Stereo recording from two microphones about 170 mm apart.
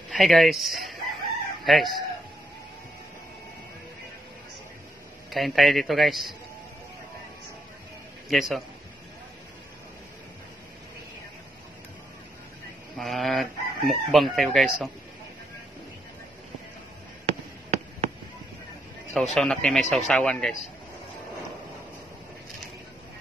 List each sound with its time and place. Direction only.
0.1 s speech: centre (ahead or behind)
5.3 s chicken: centre (ahead or behind)
8.3 s chicken: centre (ahead or behind)
12.9 s chicken: centre (ahead or behind)
17.3 s a sound: 40° right (ahead or behind)
19.1 s chicken: centre (ahead or behind)